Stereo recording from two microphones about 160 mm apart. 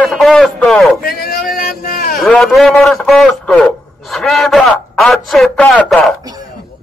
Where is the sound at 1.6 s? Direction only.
65° left (ahead or behind).